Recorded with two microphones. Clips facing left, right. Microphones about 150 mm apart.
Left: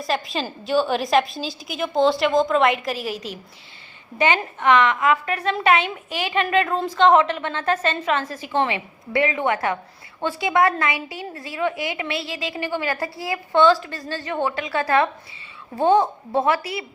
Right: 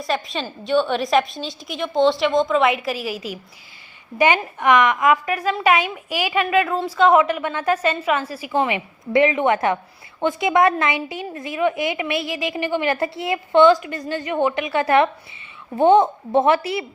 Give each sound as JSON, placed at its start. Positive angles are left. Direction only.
{"t": 0.0, "sound": "a woman's voice", "side_deg": 0}
{"t": 4.6, "sound": "a woman's voice", "side_deg": -15}